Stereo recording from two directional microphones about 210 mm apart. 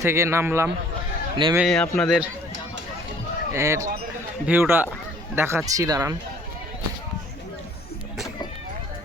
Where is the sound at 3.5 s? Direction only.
15° right (ahead or behind).